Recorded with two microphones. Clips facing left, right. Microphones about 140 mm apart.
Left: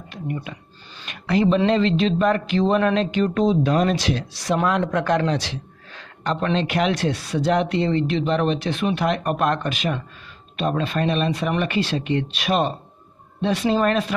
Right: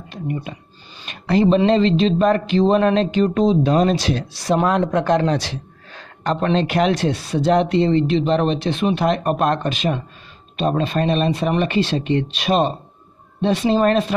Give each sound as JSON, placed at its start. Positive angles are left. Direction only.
{"t": 0.1, "sound": "speech", "side_deg": -25}
{"t": 5.3, "sound": "speech", "side_deg": -40}